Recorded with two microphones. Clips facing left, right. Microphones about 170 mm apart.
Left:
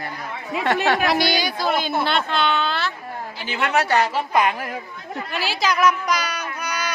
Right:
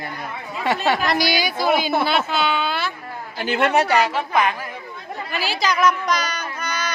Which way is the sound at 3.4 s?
50° right (ahead or behind).